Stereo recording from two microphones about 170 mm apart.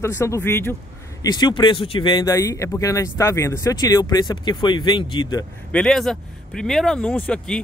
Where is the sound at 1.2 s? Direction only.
25° left (ahead or behind).